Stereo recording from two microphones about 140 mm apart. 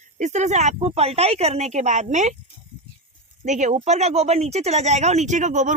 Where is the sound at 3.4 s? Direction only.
60° right (ahead or behind).